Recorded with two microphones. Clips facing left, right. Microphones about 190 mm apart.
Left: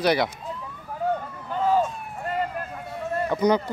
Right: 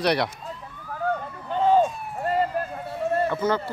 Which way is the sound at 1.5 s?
25° right (ahead or behind).